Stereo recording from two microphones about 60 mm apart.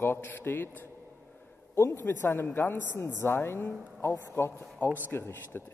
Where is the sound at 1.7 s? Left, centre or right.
Left.